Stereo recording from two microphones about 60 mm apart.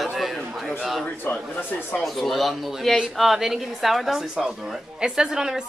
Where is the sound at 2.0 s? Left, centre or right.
Centre.